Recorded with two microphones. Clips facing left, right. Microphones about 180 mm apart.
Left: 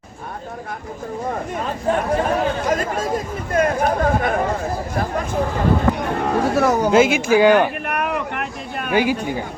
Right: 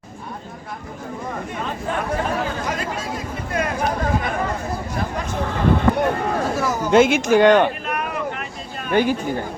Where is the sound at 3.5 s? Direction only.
50° left (ahead or behind).